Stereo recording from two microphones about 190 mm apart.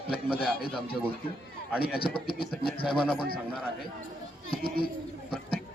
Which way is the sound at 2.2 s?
55° left (ahead or behind).